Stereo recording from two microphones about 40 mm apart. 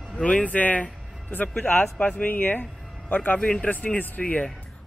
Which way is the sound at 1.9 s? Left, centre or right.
Left.